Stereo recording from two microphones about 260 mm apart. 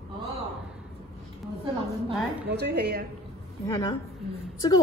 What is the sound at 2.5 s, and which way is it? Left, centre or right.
Speech, right.